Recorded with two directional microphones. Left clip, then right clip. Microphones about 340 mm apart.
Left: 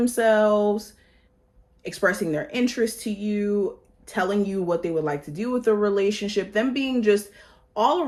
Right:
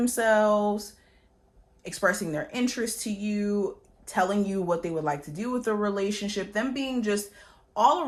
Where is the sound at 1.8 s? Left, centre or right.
Centre.